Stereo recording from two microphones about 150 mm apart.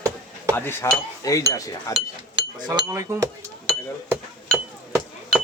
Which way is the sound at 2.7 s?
20° right (ahead or behind).